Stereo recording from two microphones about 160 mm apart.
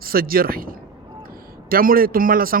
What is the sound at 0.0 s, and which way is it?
A man's voice, 65° right (ahead or behind).